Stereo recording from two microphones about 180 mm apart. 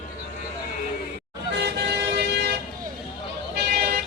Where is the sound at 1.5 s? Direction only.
70° right (ahead or behind).